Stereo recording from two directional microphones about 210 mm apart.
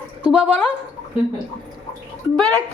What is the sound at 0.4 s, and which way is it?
Speech, 5° left (ahead or behind).